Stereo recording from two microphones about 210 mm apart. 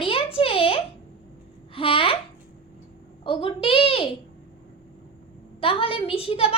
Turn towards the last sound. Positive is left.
turn(degrees=25)  # may be behind; listen again after turning